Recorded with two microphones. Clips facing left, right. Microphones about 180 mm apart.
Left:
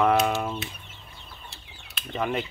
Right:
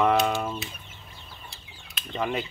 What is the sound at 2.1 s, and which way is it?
Speech, centre (ahead or behind).